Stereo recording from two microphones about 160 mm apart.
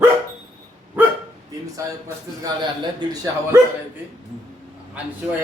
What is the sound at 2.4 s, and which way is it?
Speech, 30° right (ahead or behind).